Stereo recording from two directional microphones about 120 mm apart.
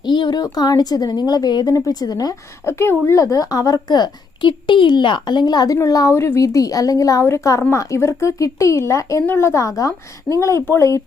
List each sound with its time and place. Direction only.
0.1 s a woman's voice: 35° left (ahead or behind)
2.6 s a woman's voice: 20° left (ahead or behind)